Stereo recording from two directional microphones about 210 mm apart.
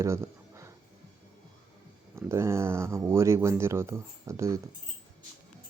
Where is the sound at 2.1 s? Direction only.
10° right (ahead or behind).